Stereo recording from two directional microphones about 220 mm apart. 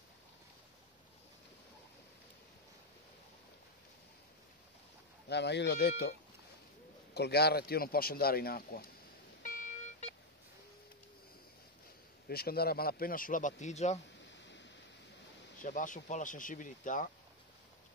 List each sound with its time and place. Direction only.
5.3 s speech: 50° left (ahead or behind)
7.2 s speech: 45° left (ahead or behind)
9.4 s music: 35° left (ahead or behind)
12.3 s speech: 45° left (ahead or behind)
15.6 s speech: 35° left (ahead or behind)